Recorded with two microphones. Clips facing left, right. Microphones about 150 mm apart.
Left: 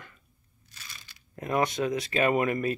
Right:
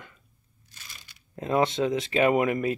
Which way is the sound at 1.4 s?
25° right (ahead or behind).